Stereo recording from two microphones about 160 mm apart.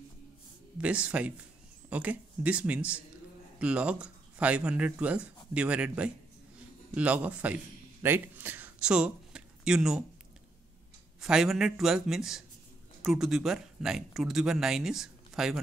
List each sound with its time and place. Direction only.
0.7 s speech: 5° right (ahead or behind)
11.1 s speech: 5° right (ahead or behind)